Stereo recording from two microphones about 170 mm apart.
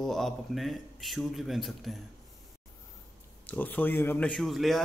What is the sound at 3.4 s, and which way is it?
Speech, 10° left (ahead or behind).